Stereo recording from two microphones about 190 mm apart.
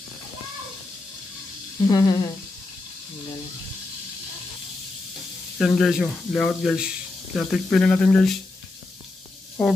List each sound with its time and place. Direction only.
1.9 s speech: 20° left (ahead or behind)
5.6 s speech: centre (ahead or behind)
9.6 s speech: 5° left (ahead or behind)